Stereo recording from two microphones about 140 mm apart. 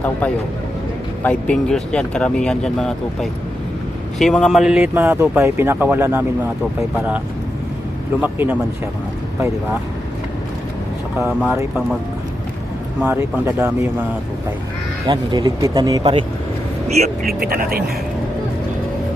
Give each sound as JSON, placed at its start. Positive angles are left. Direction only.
{"t": 1.2, "sound": "speech", "side_deg": 10}
{"t": 8.2, "sound": "speech", "side_deg": -10}
{"t": 11.2, "sound": "speech", "side_deg": 0}
{"t": 13.0, "sound": "speech", "side_deg": -10}
{"t": 15.0, "sound": "speech", "side_deg": -30}
{"t": 17.0, "sound": "speech", "side_deg": -90}